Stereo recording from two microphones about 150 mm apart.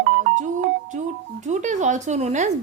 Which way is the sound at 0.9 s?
60° right (ahead or behind).